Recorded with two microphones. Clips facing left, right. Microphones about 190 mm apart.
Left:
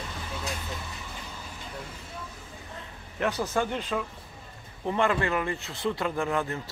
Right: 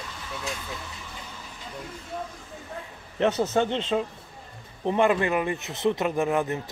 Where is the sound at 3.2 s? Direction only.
20° right (ahead or behind).